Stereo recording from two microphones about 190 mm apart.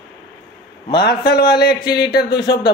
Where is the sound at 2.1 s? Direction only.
65° left (ahead or behind).